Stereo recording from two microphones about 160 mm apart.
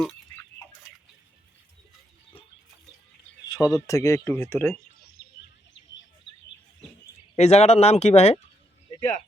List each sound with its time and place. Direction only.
3.4 s speech: 25° left (ahead or behind)
5.2 s a sound: 65° left (ahead or behind)
7.3 s speech: 40° left (ahead or behind)